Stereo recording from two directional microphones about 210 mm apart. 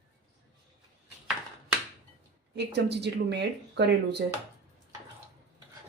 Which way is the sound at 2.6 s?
55° right (ahead or behind).